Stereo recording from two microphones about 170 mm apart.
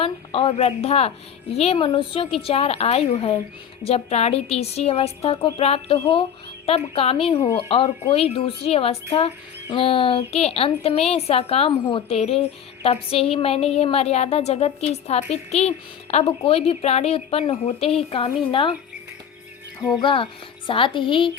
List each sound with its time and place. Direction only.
0.0 s speech: 30° left (ahead or behind)
20.0 s speech: 30° left (ahead or behind)